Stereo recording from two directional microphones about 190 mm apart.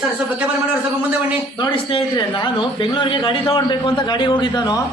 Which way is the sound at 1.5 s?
30° left (ahead or behind).